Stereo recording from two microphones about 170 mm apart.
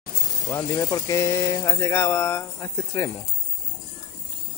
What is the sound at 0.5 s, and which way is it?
Speech, 15° left (ahead or behind).